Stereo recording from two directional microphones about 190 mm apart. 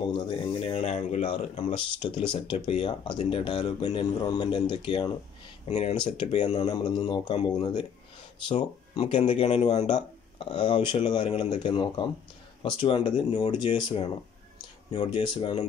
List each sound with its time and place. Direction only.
0.1 s speech: 30° left (ahead or behind)
5.7 s speech: 35° left (ahead or behind)
9.0 s speech: 35° left (ahead or behind)